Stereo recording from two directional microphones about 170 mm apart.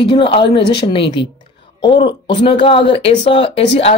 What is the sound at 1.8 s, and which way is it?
Speech, 25° left (ahead or behind).